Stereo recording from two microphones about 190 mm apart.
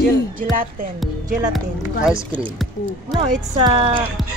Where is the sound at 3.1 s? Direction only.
30° right (ahead or behind).